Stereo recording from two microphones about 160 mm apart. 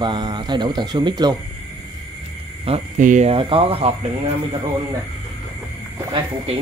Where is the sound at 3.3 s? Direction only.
35° right (ahead or behind).